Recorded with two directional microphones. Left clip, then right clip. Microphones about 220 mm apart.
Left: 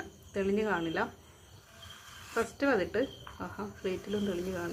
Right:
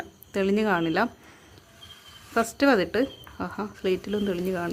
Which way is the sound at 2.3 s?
50° right (ahead or behind).